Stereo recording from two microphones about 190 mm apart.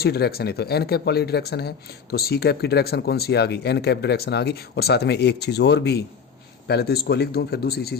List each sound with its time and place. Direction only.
0.0 s speech: 55° left (ahead or behind)